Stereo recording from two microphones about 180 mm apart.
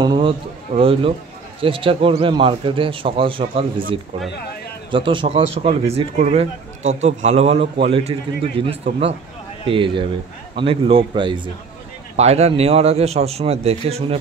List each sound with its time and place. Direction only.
0.0 s speech: 25° right (ahead or behind)
4.9 s speech: 30° right (ahead or behind)